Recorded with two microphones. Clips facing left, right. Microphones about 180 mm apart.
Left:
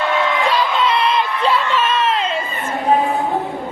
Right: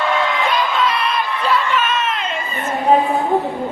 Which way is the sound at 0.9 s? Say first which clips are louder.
Left 3 dB; 25° left (ahead or behind).